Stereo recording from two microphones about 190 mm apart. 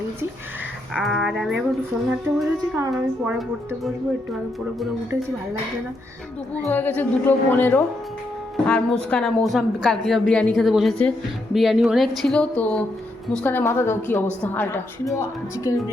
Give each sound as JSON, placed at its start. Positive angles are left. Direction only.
{"t": 0.9, "sound": "a woman's voice", "side_deg": 0}
{"t": 2.9, "sound": "a woman's voice", "side_deg": 0}
{"t": 6.7, "sound": "a woman's voice", "side_deg": 10}